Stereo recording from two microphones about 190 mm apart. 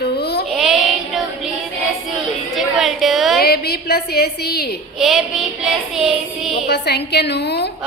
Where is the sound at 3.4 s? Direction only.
55° left (ahead or behind).